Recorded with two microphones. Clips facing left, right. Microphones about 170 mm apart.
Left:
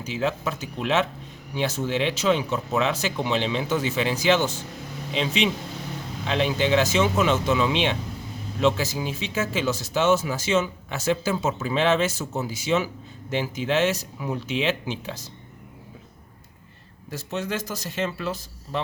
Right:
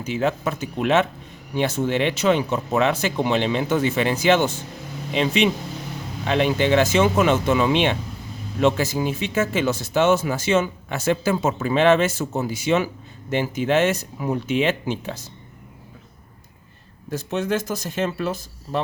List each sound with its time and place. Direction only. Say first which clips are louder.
0.0 s speech: right 4 dB; 55° right (ahead or behind)
17.1 s speech: right 6 dB; 50° right (ahead or behind)